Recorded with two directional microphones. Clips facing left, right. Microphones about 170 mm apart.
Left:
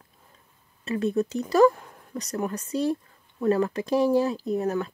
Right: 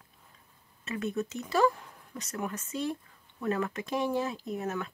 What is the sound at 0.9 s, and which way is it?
Speech, 35° left (ahead or behind).